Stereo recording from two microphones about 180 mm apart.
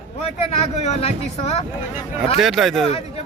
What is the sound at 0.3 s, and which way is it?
Speech, 35° left (ahead or behind).